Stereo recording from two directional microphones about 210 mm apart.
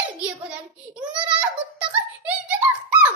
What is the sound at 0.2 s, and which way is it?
Child singing, 5° right (ahead or behind).